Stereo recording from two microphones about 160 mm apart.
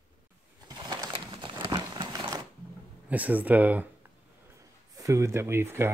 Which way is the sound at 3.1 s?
10° right (ahead or behind).